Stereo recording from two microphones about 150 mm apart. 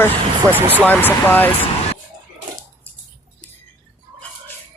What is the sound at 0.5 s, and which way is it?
Speech, 10° right (ahead or behind).